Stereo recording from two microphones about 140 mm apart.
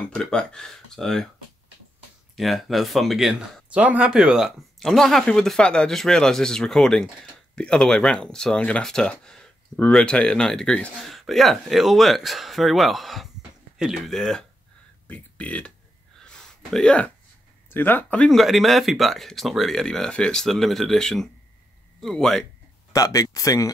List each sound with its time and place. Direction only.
0.0 s speech: 5° left (ahead or behind)
2.3 s speech: centre (ahead or behind)
16.3 s a sound: 5° left (ahead or behind)
17.6 s speech: 15° left (ahead or behind)
22.9 s speech: 25° left (ahead or behind)